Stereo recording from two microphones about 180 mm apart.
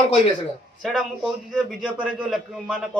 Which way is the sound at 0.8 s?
Centre (ahead or behind).